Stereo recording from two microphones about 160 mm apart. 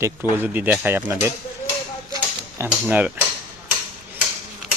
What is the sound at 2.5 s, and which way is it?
Speech, 10° right (ahead or behind).